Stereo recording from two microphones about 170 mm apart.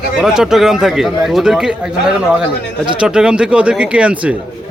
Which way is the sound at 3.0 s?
5° right (ahead or behind).